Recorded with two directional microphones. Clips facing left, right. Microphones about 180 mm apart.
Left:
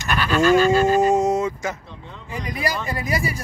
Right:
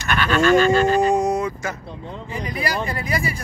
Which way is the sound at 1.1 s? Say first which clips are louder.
Left 1 dB; 25° left (ahead or behind).